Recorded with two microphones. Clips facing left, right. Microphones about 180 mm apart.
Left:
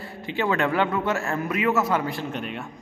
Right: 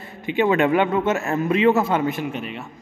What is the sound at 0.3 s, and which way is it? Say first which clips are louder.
A man's voice: right 6 dB; 20° right (ahead or behind).